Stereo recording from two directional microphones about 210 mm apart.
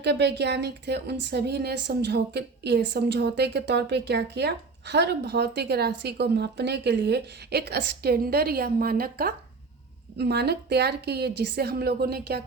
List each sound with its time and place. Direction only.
0.0 s speech: 55° right (ahead or behind)